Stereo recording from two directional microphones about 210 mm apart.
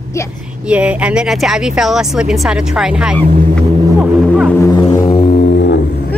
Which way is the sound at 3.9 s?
5° right (ahead or behind).